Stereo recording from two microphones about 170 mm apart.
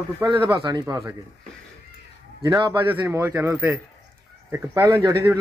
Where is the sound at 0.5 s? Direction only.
25° right (ahead or behind).